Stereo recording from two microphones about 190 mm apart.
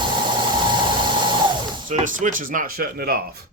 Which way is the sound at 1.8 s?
45° right (ahead or behind).